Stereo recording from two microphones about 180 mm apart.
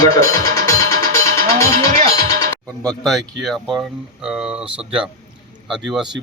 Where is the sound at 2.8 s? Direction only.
Centre (ahead or behind).